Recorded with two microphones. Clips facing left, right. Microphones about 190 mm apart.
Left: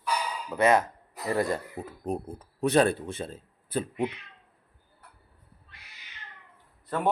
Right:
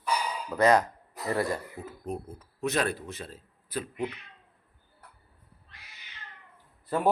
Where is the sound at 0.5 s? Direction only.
25° left (ahead or behind).